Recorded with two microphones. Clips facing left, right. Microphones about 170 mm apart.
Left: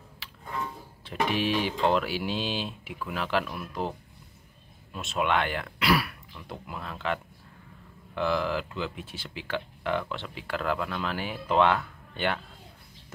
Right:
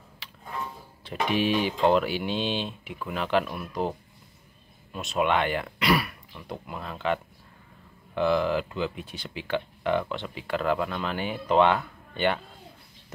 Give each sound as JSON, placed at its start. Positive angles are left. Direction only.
{"t": 0.2, "sound": "music", "side_deg": 0}
{"t": 1.0, "sound": "speech", "side_deg": 0}
{"t": 4.9, "sound": "speech", "side_deg": 0}